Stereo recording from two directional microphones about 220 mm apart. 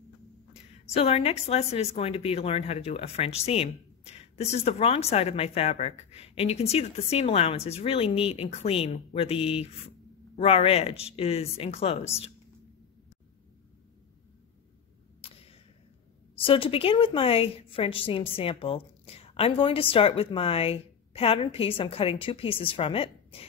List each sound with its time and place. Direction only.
0.9 s a woman's voice: 30° left (ahead or behind)
15.2 s a sound: 25° left (ahead or behind)
16.3 s a woman's voice: 25° left (ahead or behind)